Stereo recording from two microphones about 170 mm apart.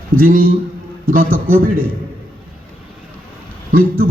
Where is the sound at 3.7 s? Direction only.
55° right (ahead or behind).